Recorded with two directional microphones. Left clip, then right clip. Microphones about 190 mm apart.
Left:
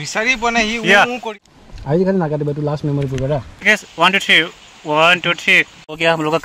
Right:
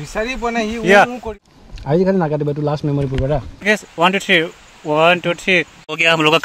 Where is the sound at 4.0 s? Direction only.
30° right (ahead or behind).